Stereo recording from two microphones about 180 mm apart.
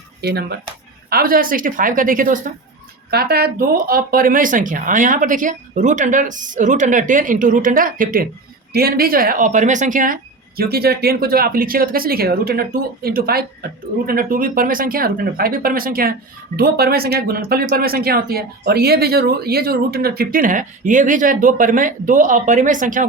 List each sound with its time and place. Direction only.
0.2 s speech: 65° right (ahead or behind)
1.1 s speech: 55° right (ahead or behind)
3.1 s speech: 60° right (ahead or behind)
10.6 s speech: 60° right (ahead or behind)